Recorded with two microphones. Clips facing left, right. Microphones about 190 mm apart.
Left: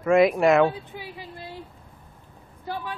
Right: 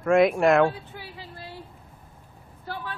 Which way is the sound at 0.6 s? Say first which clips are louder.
Left 1 dB; 15° left (ahead or behind).